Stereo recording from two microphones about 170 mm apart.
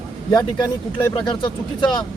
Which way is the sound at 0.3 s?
25° left (ahead or behind).